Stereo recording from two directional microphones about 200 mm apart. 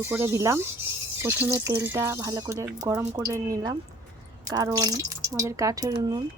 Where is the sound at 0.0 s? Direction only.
10° right (ahead or behind).